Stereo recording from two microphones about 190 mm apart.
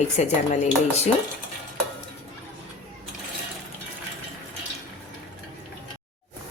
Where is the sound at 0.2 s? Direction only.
40° left (ahead or behind).